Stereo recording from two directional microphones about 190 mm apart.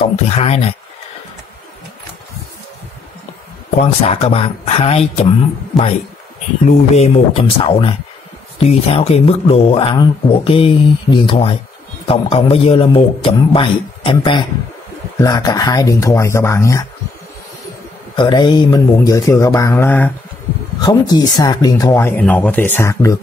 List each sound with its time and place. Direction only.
0.1 s speech: 35° left (ahead or behind)
3.7 s speech: 35° left (ahead or behind)
5.7 s a man's voice: centre (ahead or behind)
7.0 s speech: 25° left (ahead or behind)
18.1 s speech: 25° left (ahead or behind)